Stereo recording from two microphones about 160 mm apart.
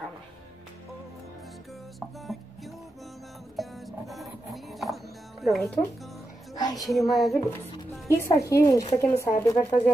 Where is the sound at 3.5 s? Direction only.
Centre (ahead or behind).